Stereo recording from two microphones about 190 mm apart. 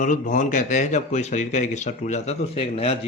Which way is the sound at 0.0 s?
40° left (ahead or behind).